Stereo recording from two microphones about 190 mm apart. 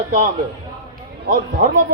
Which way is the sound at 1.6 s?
45° right (ahead or behind).